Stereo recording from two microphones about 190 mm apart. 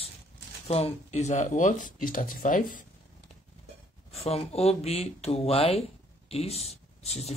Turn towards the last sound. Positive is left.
turn(degrees=35)  # may be behind; listen again after turning